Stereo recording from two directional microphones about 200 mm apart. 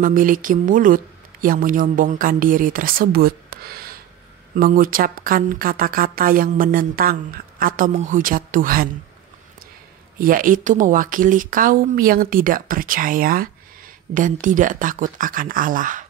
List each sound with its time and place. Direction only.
0.0 s a woman's voice: 45° right (ahead or behind)
10.1 s a woman's voice: 45° right (ahead or behind)